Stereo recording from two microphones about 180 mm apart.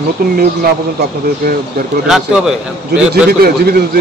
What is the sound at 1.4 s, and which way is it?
Speech, 55° right (ahead or behind).